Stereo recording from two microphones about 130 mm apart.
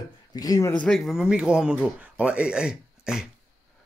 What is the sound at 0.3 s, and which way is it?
Speech, 30° left (ahead or behind).